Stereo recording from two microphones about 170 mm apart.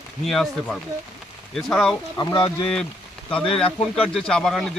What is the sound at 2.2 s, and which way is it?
Speech, 25° left (ahead or behind).